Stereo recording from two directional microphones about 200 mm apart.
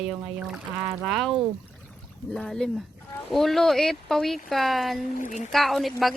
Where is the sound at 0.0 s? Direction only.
5° right (ahead or behind).